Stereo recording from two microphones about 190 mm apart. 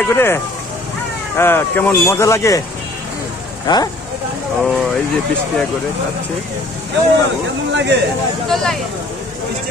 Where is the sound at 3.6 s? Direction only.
20° left (ahead or behind).